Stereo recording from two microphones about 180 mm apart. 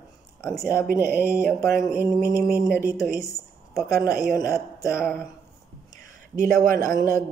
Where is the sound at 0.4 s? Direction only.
15° left (ahead or behind).